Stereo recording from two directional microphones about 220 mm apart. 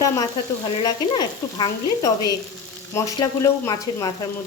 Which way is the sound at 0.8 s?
20° left (ahead or behind).